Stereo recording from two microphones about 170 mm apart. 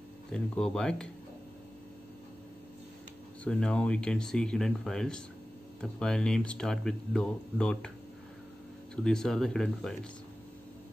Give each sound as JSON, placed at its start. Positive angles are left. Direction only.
{"t": 0.3, "sound": "speech", "side_deg": 5}
{"t": 3.4, "sound": "speech", "side_deg": 5}
{"t": 8.9, "sound": "speech", "side_deg": 5}